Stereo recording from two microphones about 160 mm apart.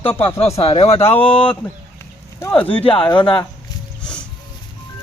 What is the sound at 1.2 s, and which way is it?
Speech, 10° left (ahead or behind).